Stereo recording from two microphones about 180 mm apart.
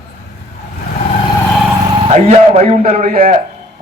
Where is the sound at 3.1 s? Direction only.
50° right (ahead or behind).